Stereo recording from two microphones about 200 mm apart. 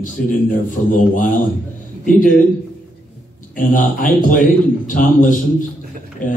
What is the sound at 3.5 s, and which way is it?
A man's voice, 45° left (ahead or behind).